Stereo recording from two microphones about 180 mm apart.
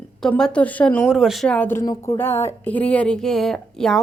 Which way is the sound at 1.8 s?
20° left (ahead or behind).